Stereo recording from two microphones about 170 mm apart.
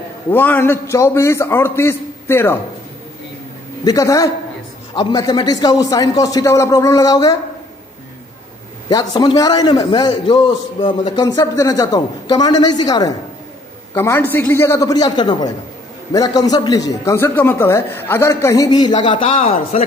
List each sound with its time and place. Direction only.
0.3 s a man's voice: 10° left (ahead or behind)
3.8 s a man's voice: 20° left (ahead or behind)
8.8 s a man's voice: 25° left (ahead or behind)
13.9 s a man's voice: 10° left (ahead or behind); by 19.8 s 35° left (ahead or behind)